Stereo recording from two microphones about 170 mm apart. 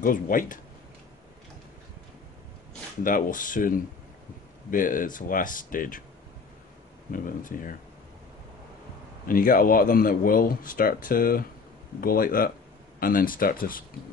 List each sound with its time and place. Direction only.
0.0 s speech: 55° left (ahead or behind)
3.0 s speech: 55° left (ahead or behind)
7.1 s speech: 55° left (ahead or behind)
9.2 s speech: 55° left (ahead or behind)